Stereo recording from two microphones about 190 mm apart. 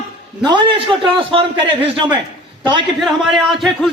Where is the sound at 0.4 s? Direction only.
25° right (ahead or behind).